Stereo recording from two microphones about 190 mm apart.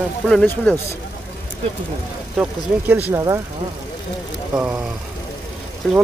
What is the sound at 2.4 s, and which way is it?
Speech, 10° right (ahead or behind).